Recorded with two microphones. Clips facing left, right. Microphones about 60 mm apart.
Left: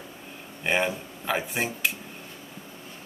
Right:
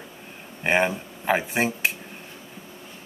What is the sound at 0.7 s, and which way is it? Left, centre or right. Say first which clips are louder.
Speech: right 4 dB; right.